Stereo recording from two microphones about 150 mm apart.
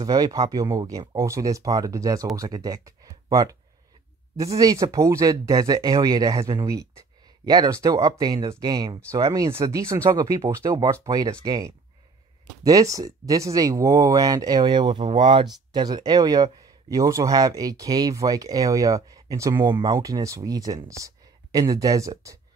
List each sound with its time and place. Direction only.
0.0 s speech: 25° right (ahead or behind)